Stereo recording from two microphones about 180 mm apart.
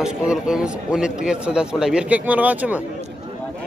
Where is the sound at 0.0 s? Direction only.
5° right (ahead or behind).